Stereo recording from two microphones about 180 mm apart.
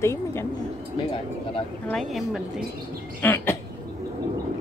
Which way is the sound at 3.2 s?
10° left (ahead or behind).